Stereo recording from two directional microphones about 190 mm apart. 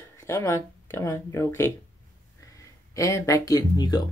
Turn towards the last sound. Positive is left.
turn(degrees=20)  # may be behind; listen again after turning